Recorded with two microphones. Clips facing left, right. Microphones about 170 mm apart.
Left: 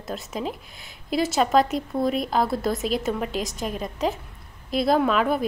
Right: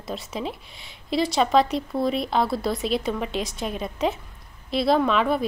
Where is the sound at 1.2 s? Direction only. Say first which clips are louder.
Even; 5° left (ahead or behind).